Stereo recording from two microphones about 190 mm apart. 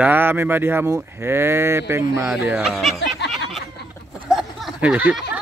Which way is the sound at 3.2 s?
65° left (ahead or behind).